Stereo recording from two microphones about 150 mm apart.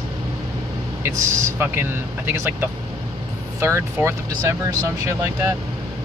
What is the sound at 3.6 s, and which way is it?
Speech, 15° right (ahead or behind).